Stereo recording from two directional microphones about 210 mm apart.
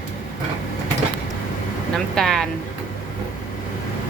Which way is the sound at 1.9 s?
Centre (ahead or behind).